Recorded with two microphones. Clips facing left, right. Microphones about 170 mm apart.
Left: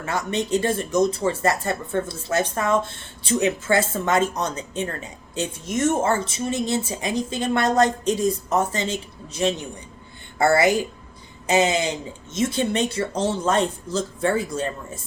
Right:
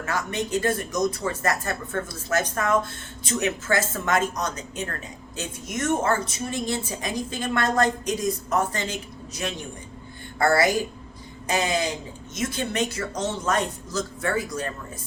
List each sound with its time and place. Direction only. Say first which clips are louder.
0.0 s speech: left 3 dB; 25° left (ahead or behind)